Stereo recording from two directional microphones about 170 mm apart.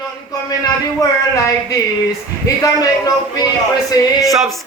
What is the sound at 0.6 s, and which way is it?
Speech, 20° left (ahead or behind).